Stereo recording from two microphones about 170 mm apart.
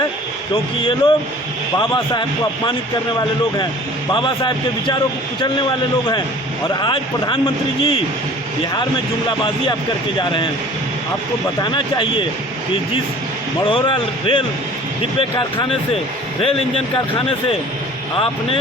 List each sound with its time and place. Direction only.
0.5 s speech: 30° left (ahead or behind)
4.1 s a man's voice: 30° left (ahead or behind)
6.7 s a man's voice: 30° left (ahead or behind)
10.2 s a man's voice: 30° left (ahead or behind)
11.6 s a man's voice: 30° left (ahead or behind)
13.7 s speech: 30° left (ahead or behind)